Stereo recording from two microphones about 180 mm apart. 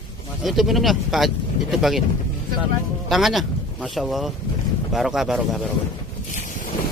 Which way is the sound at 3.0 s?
Centre (ahead or behind).